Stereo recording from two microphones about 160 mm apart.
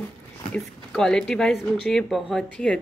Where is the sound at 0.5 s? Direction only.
5° left (ahead or behind).